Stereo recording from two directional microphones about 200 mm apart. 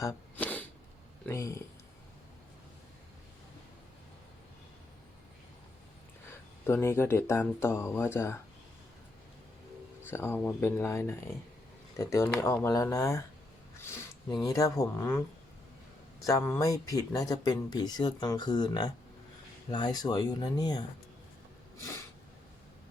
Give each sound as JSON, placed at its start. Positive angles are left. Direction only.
{"t": 0.0, "sound": "a sound", "side_deg": 10}
{"t": 1.3, "sound": "speech", "side_deg": 15}
{"t": 6.7, "sound": "speech", "side_deg": 10}
{"t": 10.1, "sound": "speech", "side_deg": 10}
{"t": 16.2, "sound": "speech", "side_deg": 15}